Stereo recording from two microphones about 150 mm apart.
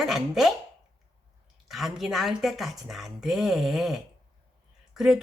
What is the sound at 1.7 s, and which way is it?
A woman's voice, centre (ahead or behind).